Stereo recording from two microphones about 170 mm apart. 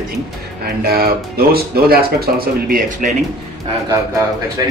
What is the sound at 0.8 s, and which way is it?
Speech, 60° right (ahead or behind).